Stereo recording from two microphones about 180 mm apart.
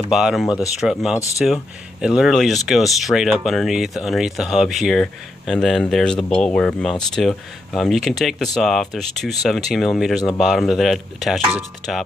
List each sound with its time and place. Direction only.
0.1 s speech: centre (ahead or behind)
1.1 s speech: 20° left (ahead or behind)
1.4 s speech: 5° right (ahead or behind)